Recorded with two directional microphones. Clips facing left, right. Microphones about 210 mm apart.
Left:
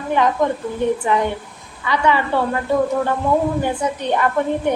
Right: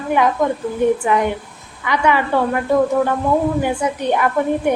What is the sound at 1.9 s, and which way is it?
Speech, 15° right (ahead or behind).